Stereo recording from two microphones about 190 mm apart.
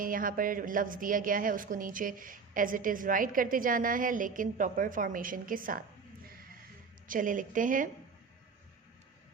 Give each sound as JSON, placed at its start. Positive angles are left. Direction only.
{"t": 0.0, "sound": "a woman's voice", "side_deg": -45}
{"t": 7.1, "sound": "a woman's voice", "side_deg": -45}